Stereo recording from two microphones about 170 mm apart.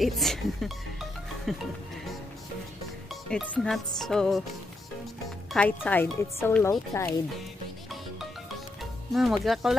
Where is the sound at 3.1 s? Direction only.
5° left (ahead or behind).